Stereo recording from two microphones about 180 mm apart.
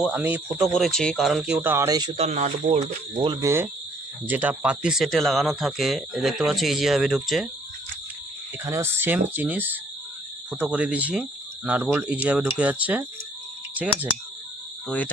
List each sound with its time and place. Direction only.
0.0 s speech: 5° right (ahead or behind); by 3.2 s 35° right (ahead or behind)
3.2 s speech: 20° right (ahead or behind); by 7.4 s centre (ahead or behind)
8.6 s speech: 15° right (ahead or behind)
14.8 s cricket: 10° left (ahead or behind)